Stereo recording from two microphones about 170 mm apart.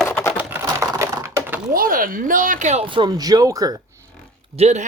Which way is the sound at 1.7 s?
55° right (ahead or behind).